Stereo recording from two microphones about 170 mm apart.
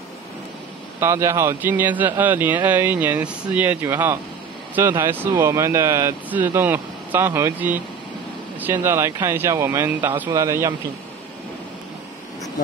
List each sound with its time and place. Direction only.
0.9 s speech: 15° right (ahead or behind)